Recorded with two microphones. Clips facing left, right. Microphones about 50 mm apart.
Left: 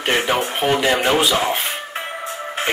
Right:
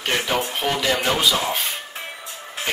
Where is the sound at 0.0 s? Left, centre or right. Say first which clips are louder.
Left 4 dB; left.